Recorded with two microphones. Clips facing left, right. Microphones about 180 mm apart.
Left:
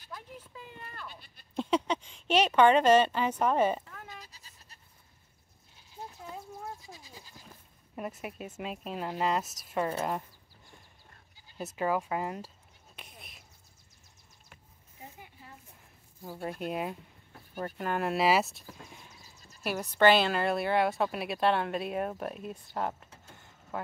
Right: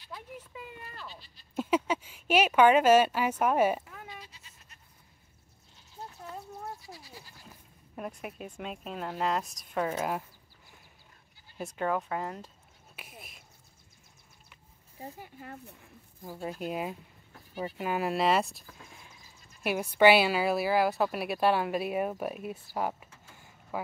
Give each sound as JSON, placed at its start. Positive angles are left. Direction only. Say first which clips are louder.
{"t": 0.5, "sound": "a sound", "louder": "right 2 dB", "side_deg": -5}
{"t": 0.8, "sound": "sheep", "louder": "even", "side_deg": 55}
{"t": 1.5, "sound": "speech", "louder": "right 1 dB", "side_deg": -5}
{"t": 4.2, "sound": "bleat", "louder": "right 1 dB", "side_deg": 40}
{"t": 6.3, "sound": "a sound", "louder": "right 2 dB", "side_deg": -5}
{"t": 6.9, "sound": "bleat", "louder": "right 2 dB", "side_deg": 20}
{"t": 7.9, "sound": "a woman's voice", "louder": "left 1 dB", "side_deg": 0}
{"t": 11.5, "sound": "speech", "louder": "left 1 dB", "side_deg": 5}
{"t": 12.9, "sound": "a sound", "louder": "right 2 dB", "side_deg": -5}
{"t": 15.0, "sound": "speech", "louder": "right 6 dB", "side_deg": -40}
{"t": 15.3, "sound": "speech", "louder": "right 8 dB", "side_deg": -65}
{"t": 16.3, "sound": "a woman's voice", "louder": "even", "side_deg": 0}
{"t": 19.6, "sound": "a woman's voice", "louder": "right 2 dB", "side_deg": -10}